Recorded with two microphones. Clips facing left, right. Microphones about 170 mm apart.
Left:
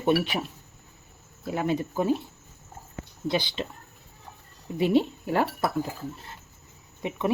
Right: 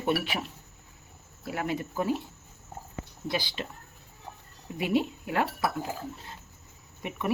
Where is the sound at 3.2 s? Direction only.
20° left (ahead or behind).